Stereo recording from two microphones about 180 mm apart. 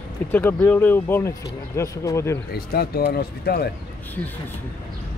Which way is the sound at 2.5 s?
60° left (ahead or behind).